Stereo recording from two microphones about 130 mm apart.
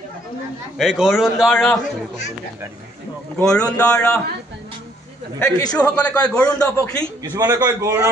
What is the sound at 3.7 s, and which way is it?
Speech, 10° left (ahead or behind).